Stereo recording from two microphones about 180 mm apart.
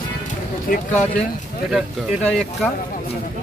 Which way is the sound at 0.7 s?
55° left (ahead or behind).